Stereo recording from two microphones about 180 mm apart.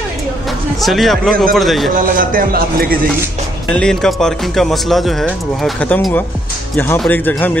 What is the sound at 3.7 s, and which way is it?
Speech, 5° left (ahead or behind).